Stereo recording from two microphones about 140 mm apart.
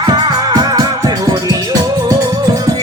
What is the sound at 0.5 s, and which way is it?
Music, 25° right (ahead or behind).